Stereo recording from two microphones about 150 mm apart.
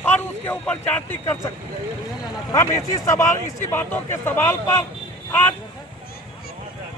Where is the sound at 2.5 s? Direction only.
20° left (ahead or behind).